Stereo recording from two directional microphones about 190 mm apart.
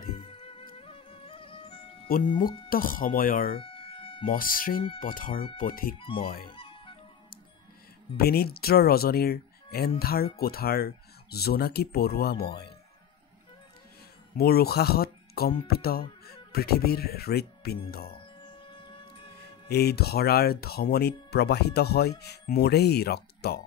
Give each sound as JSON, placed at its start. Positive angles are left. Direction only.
{"t": 0.3, "sound": "music", "side_deg": 30}
{"t": 2.1, "sound": "speech", "side_deg": 50}
{"t": 3.5, "sound": "a sound", "side_deg": 30}
{"t": 4.2, "sound": "speech", "side_deg": 45}
{"t": 5.9, "sound": "speech", "side_deg": 25}
{"t": 6.5, "sound": "music", "side_deg": 25}
{"t": 8.2, "sound": "speech", "side_deg": 55}
{"t": 14.3, "sound": "speech", "side_deg": 55}
{"t": 18.0, "sound": "a sound", "side_deg": 25}
{"t": 19.7, "sound": "speech", "side_deg": 55}